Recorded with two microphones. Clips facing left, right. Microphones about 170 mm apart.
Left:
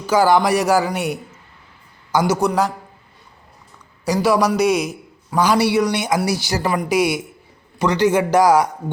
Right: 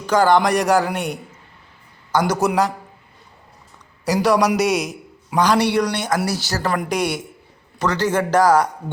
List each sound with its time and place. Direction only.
0.0 s a man's voice: 5° left (ahead or behind)
4.0 s a man's voice: centre (ahead or behind)